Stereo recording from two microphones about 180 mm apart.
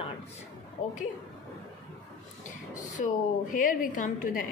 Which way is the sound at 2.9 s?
45° left (ahead or behind).